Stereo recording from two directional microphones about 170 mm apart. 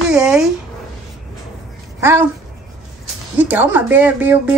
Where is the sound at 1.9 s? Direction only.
15° right (ahead or behind).